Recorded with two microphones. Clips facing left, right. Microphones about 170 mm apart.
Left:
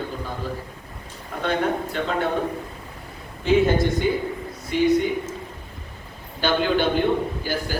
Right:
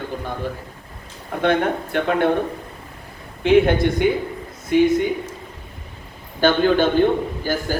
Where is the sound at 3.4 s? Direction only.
60° right (ahead or behind).